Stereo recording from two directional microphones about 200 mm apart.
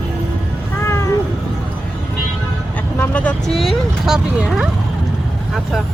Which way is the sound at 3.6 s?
5° right (ahead or behind).